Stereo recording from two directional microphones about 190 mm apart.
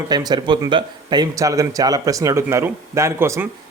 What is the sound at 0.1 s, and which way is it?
A man's voice, 20° right (ahead or behind).